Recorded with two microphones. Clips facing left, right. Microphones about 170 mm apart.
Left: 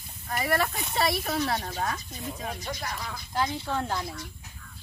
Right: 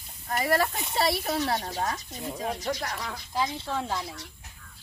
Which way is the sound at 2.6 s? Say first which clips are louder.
Right 4 dB; 75° right (ahead or behind).